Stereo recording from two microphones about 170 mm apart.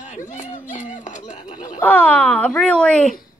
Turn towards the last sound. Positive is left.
turn(degrees=5)  # may be behind; listen again after turning